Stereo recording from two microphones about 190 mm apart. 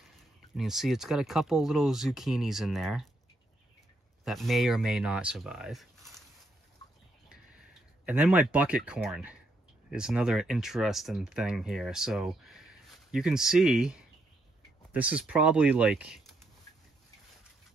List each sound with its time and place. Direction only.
0.2 s speech: centre (ahead or behind)
4.2 s speech: centre (ahead or behind)
7.2 s a sound: 5° right (ahead or behind)
9.8 s speech: 5° right (ahead or behind)